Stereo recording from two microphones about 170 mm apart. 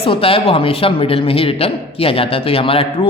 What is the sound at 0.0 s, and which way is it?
A man's voice, 35° left (ahead or behind).